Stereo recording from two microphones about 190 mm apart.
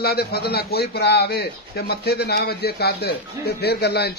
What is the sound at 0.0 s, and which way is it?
A man's voice, 55° left (ahead or behind).